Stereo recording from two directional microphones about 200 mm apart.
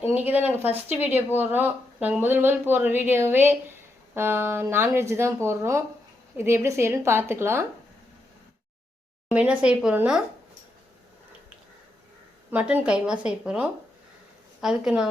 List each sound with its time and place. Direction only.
0.1 s a woman's voice: 10° right (ahead or behind)
9.3 s a woman's voice: 10° right (ahead or behind)
12.5 s speech: 10° right (ahead or behind)